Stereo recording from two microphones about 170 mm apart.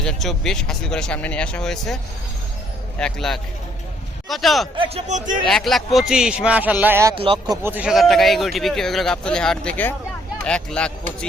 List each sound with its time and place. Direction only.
0.0 s speech: centre (ahead or behind)
3.0 s speech: centre (ahead or behind)
4.8 s a man's voice: 40° right (ahead or behind)
5.5 s speech: centre (ahead or behind)
7.2 s speech: 30° right (ahead or behind)
7.5 s speech: 10° right (ahead or behind); by 10.9 s 5° left (ahead or behind)